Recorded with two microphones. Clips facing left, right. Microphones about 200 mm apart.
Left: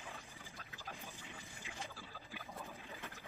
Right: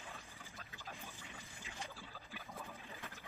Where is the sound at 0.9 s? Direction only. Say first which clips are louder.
Left 2 dB; centre (ahead or behind).